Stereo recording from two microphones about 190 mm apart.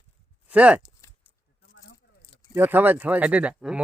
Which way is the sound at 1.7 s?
70° left (ahead or behind).